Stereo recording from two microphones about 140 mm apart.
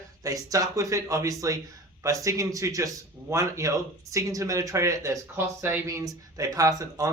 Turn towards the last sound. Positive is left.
turn(degrees=-25)  # may be behind; listen again after turning